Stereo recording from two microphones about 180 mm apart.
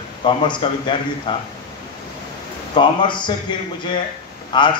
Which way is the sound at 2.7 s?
25° left (ahead or behind).